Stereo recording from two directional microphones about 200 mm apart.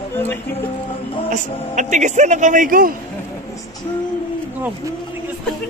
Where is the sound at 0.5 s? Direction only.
25° left (ahead or behind).